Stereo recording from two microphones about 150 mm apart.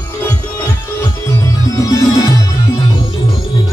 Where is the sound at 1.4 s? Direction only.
20° left (ahead or behind).